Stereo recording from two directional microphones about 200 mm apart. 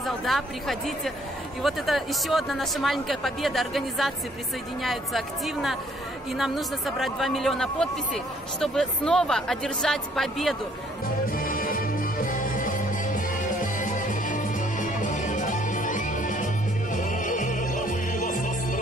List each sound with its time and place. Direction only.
0.0 s a woman's voice: centre (ahead or behind)
11.3 s music: 45° left (ahead or behind)